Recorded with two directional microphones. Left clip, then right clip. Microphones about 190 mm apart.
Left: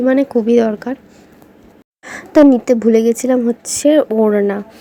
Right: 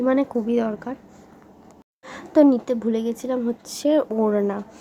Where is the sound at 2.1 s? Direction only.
25° left (ahead or behind).